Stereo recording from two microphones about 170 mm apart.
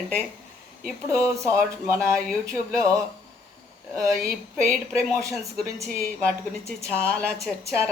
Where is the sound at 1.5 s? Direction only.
15° right (ahead or behind).